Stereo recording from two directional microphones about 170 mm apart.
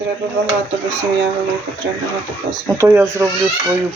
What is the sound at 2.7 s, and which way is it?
Speech, 20° right (ahead or behind).